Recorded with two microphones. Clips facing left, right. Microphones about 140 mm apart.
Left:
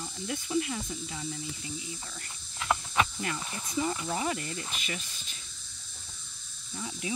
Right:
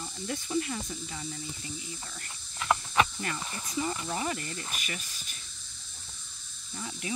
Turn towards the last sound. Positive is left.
turn(degrees=15)  # may be behind; listen again after turning